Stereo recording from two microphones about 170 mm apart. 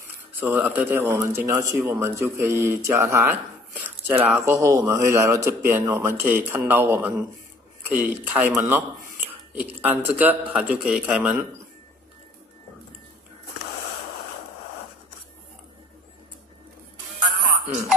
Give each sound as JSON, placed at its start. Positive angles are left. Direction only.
{"t": 0.4, "sound": "speech", "side_deg": -10}